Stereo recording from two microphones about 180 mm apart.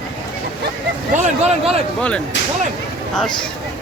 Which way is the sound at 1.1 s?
40° right (ahead or behind).